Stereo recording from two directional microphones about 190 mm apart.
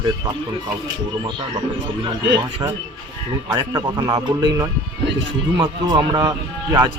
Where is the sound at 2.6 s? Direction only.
20° right (ahead or behind).